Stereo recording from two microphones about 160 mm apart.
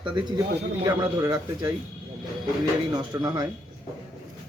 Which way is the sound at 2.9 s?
25° right (ahead or behind).